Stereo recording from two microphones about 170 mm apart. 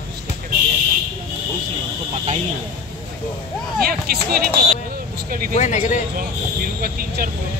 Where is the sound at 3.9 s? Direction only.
65° right (ahead or behind).